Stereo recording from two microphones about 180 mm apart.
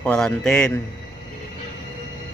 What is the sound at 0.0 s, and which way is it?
Speech, 5° left (ahead or behind).